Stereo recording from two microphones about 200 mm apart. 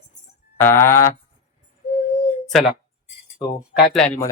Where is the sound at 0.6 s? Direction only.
10° left (ahead or behind).